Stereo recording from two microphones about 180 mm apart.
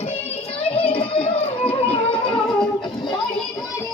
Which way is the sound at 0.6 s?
30° left (ahead or behind).